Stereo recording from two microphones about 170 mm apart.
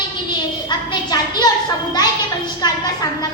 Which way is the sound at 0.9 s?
25° left (ahead or behind).